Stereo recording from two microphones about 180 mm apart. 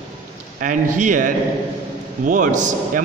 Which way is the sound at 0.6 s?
45° right (ahead or behind).